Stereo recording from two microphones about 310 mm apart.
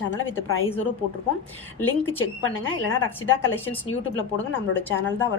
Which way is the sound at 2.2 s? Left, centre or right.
Left.